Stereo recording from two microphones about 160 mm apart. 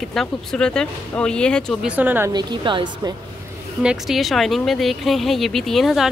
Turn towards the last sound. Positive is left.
turn(degrees=0)  # may be behind; listen again after turning